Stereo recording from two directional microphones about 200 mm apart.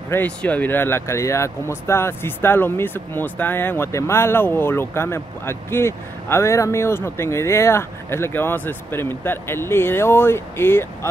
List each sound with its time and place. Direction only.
0.1 s speech: 10° left (ahead or behind)